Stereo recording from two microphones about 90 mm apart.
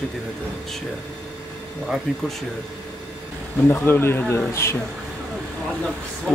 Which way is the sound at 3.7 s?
25° left (ahead or behind).